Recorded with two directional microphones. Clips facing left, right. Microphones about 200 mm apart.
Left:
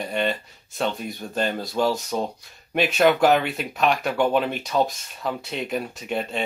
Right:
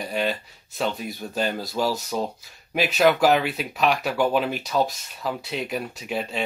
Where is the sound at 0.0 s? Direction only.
Centre (ahead or behind).